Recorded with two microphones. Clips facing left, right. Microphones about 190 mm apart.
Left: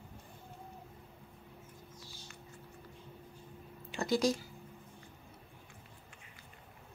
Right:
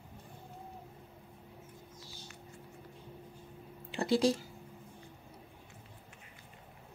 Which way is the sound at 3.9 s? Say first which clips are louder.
Right 2 dB; 30° right (ahead or behind).